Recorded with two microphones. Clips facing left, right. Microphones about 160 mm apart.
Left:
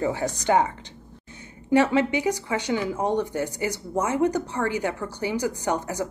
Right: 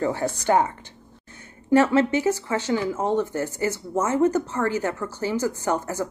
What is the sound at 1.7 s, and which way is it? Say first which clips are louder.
A woman's voice: right 2 dB; 15° left (ahead or behind).